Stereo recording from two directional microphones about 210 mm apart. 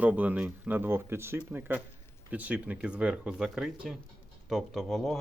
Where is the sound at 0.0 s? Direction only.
5° right (ahead or behind).